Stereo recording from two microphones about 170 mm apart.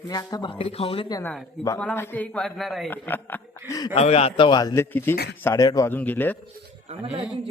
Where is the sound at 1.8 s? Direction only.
10° left (ahead or behind).